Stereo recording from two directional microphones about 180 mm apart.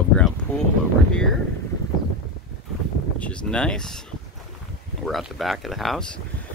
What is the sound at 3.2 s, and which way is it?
Speech, 5° left (ahead or behind).